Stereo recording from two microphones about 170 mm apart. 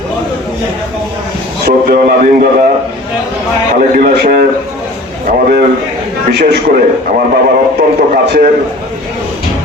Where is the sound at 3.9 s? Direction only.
55° right (ahead or behind).